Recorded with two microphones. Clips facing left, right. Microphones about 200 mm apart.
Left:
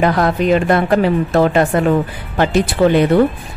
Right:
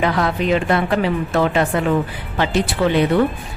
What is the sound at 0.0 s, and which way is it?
Speech, 45° left (ahead or behind).